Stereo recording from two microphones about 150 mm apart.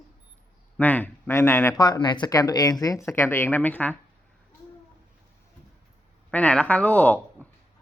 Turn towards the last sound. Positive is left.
turn(degrees=10)  # may be behind; listen again after turning